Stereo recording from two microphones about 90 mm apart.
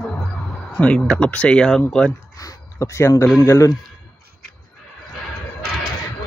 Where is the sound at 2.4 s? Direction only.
35° left (ahead or behind).